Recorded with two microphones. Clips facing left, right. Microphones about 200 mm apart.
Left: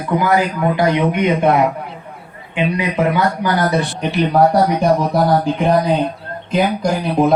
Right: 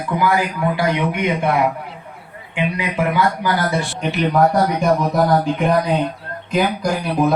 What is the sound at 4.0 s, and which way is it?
A man's voice, 35° left (ahead or behind).